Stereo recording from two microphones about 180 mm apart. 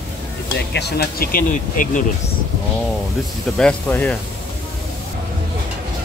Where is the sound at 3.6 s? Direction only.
10° left (ahead or behind).